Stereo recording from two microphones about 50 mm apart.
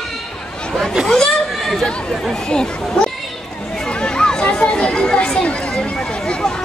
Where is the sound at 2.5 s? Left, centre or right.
Centre.